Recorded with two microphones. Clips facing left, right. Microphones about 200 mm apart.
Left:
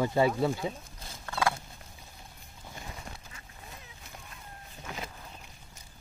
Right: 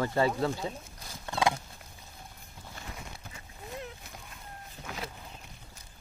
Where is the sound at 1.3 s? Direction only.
15° right (ahead or behind).